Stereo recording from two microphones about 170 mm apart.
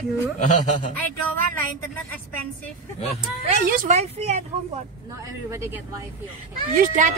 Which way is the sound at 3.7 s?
55° right (ahead or behind).